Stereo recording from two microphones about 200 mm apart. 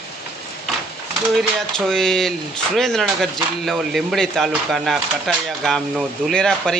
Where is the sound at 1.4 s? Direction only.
Centre (ahead or behind).